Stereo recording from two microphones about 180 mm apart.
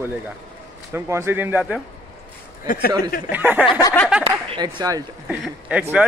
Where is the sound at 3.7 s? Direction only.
20° left (ahead or behind).